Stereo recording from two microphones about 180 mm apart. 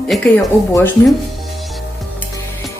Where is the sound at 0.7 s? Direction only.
20° left (ahead or behind).